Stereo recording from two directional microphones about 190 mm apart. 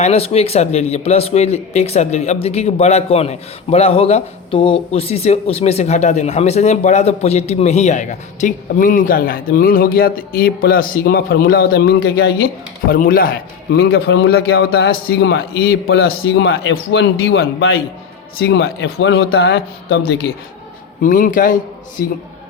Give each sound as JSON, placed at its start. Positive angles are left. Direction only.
{"t": 0.0, "sound": "speech", "side_deg": 35}
{"t": 12.9, "sound": "a man's voice", "side_deg": 50}
{"t": 18.4, "sound": "speech", "side_deg": 65}
{"t": 21.0, "sound": "a man's voice", "side_deg": 45}